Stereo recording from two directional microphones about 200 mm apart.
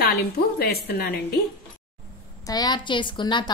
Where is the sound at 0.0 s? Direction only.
55° left (ahead or behind).